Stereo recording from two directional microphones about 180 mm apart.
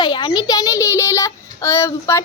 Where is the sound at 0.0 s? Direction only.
25° left (ahead or behind).